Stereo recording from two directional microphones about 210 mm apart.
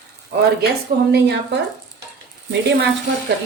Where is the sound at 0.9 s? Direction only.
50° right (ahead or behind).